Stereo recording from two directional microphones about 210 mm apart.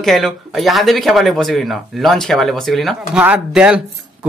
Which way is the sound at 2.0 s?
Centre (ahead or behind).